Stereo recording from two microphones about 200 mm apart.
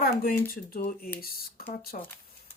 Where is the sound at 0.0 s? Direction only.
45° left (ahead or behind).